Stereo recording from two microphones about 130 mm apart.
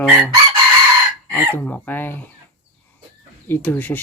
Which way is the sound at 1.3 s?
10° left (ahead or behind).